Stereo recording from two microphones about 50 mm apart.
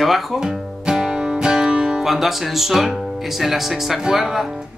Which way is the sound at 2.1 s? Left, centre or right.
Centre.